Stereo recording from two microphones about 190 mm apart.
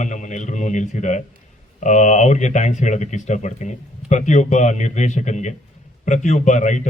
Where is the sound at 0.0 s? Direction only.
40° left (ahead or behind).